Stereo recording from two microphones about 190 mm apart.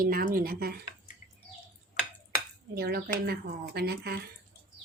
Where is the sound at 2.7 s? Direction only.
55° right (ahead or behind).